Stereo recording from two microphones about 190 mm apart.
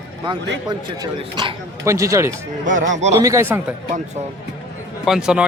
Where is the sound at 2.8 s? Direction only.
40° right (ahead or behind).